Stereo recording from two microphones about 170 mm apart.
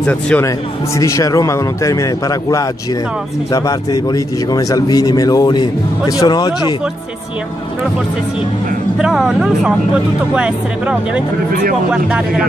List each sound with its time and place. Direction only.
0.0 s speech: 10° left (ahead or behind)
0.9 s a man's voice: 20° left (ahead or behind)
8.9 s speech: 5° right (ahead or behind)